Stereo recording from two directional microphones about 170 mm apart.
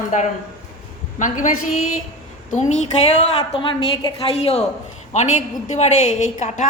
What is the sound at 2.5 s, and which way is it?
Speech, 45° left (ahead or behind).